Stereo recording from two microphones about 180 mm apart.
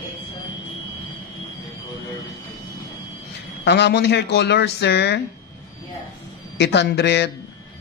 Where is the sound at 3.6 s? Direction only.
70° left (ahead or behind).